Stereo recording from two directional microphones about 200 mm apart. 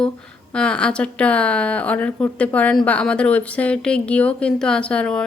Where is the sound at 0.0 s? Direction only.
5° left (ahead or behind).